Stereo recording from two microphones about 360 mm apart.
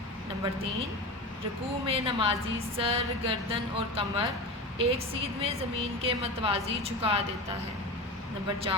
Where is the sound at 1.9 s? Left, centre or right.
Centre.